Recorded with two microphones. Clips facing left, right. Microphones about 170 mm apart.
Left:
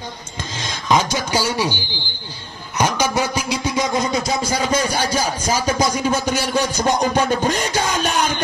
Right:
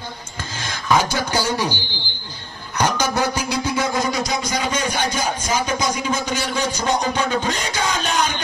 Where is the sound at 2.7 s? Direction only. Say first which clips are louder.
Left 1 dB; 10° left (ahead or behind).